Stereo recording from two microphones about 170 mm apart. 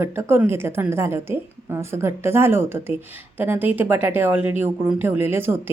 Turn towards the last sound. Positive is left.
turn(degrees=-15)  # may be behind; listen again after turning